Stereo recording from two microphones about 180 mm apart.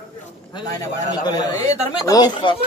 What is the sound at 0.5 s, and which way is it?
A man's voice, 25° left (ahead or behind).